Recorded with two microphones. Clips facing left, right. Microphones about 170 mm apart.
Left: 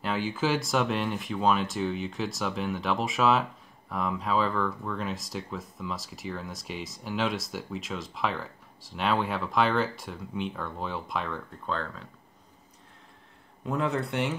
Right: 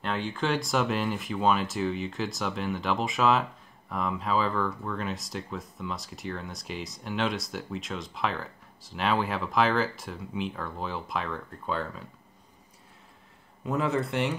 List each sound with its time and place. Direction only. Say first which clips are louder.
0.0 s speech: left 1 dB; 5° left (ahead or behind)
13.7 s speech: right 1 dB; centre (ahead or behind)